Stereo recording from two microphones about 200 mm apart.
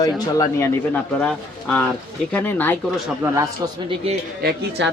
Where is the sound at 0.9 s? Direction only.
5° left (ahead or behind).